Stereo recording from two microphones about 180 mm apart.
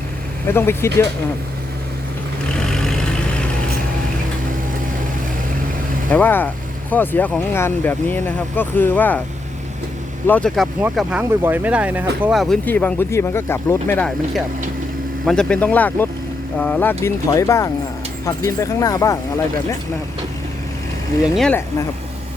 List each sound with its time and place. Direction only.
0.4 s speech: 15° left (ahead or behind)
2.6 s vehicle: 5° left (ahead or behind)
6.1 s speech: 10° left (ahead or behind)
10.2 s speech: 5° left (ahead or behind)
10.9 s speech: 10° right (ahead or behind); by 14.1 s 10° left (ahead or behind)
15.3 s speech: 5° left (ahead or behind)
21.3 s speech: 5° left (ahead or behind)